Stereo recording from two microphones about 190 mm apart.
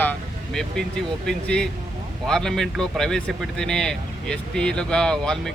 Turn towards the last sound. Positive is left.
turn(degrees=5)  # may be behind; listen again after turning